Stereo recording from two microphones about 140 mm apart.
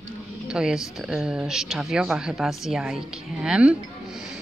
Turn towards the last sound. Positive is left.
turn(degrees=-5)  # may be behind; listen again after turning